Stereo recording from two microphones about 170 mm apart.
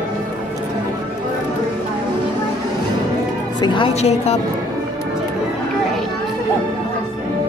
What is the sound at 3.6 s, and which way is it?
Speech, 30° left (ahead or behind).